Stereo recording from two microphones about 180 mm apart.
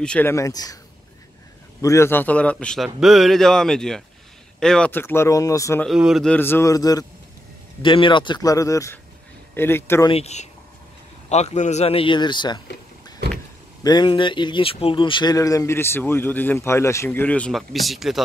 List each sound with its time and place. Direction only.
0.0 s speech: 10° left (ahead or behind)
1.8 s a man's voice: 15° left (ahead or behind)
5.9 s a man's voice: centre (ahead or behind)
6.3 s speech: 10° left (ahead or behind)
10.0 s a man's voice: 35° left (ahead or behind)
13.8 s speech: 25° left (ahead or behind); by 18.2 s centre (ahead or behind)